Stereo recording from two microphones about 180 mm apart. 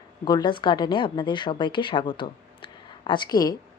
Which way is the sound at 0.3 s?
25° left (ahead or behind).